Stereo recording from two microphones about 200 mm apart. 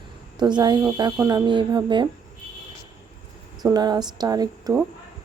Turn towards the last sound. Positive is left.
turn(degrees=-20)  # may be behind; listen again after turning